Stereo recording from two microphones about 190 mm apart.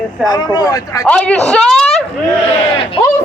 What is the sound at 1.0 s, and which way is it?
A man's voice, 5° left (ahead or behind).